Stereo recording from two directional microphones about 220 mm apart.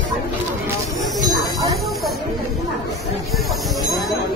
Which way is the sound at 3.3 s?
Centre (ahead or behind).